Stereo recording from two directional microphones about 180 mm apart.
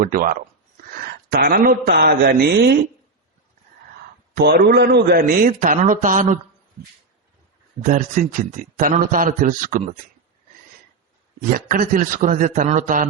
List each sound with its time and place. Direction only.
0.0 s a man's voice: 50° right (ahead or behind)
4.4 s a man's voice: 60° right (ahead or behind); by 6.4 s 45° right (ahead or behind)
7.8 s a man's voice: 45° right (ahead or behind)
11.4 s a man's voice: 50° right (ahead or behind)